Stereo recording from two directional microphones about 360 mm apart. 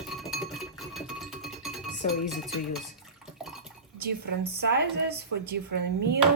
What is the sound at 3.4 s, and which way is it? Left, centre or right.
Dishes, centre.